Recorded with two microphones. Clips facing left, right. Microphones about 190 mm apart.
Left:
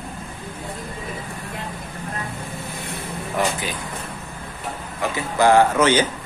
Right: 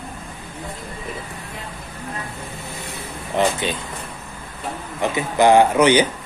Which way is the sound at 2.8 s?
55° left (ahead or behind).